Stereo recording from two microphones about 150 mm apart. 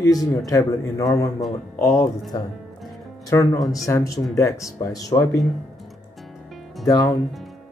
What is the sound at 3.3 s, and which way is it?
Speech, 25° left (ahead or behind).